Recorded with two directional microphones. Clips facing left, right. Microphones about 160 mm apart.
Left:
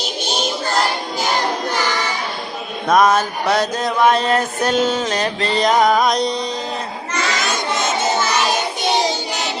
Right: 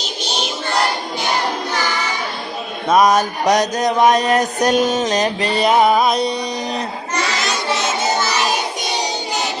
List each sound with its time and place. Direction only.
2.9 s music: 15° right (ahead or behind)